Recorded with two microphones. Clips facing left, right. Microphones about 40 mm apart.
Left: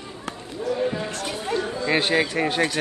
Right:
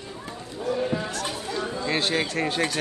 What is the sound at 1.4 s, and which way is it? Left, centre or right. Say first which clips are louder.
Chatter: left 4 dB; left.